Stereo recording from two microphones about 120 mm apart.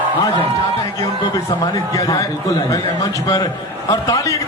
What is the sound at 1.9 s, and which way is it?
A man's voice, 25° left (ahead or behind).